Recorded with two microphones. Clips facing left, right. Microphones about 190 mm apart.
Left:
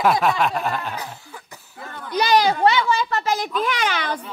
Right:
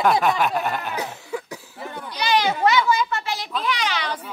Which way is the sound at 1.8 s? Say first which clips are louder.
Right 2 dB; 15° right (ahead or behind).